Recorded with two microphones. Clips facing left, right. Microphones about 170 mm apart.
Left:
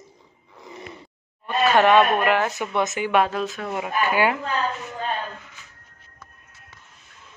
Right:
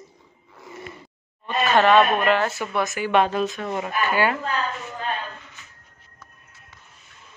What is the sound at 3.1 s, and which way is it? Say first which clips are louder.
A woman's voice: right 4 dB; 5° left (ahead or behind).